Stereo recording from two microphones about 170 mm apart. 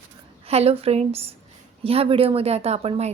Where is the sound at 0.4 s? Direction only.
35° right (ahead or behind).